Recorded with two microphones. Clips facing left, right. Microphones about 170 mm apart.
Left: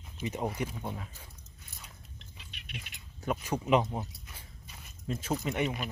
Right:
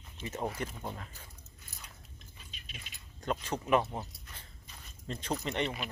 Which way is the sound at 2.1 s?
70° left (ahead or behind).